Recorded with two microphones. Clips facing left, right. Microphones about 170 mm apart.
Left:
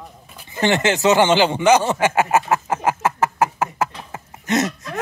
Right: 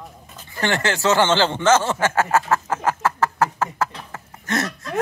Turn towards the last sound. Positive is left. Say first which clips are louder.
# left 4 dB
turn(degrees=20)  # may be behind; listen again after turning